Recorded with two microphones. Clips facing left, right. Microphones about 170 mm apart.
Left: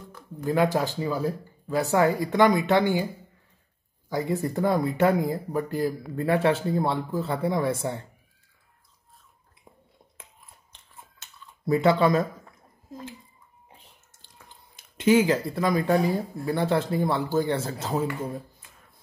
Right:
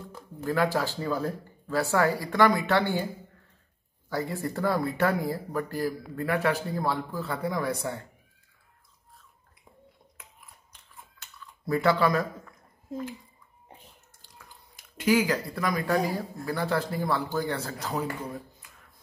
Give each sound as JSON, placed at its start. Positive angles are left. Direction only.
{"t": 0.5, "sound": "speech", "side_deg": 20}
{"t": 4.1, "sound": "speech", "side_deg": 20}
{"t": 10.7, "sound": "chewing", "side_deg": 25}
{"t": 14.2, "sound": "speech", "side_deg": 25}
{"t": 18.6, "sound": "a sound", "side_deg": 25}